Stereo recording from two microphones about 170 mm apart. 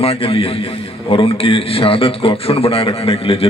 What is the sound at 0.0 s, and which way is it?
A man's voice, 35° left (ahead or behind).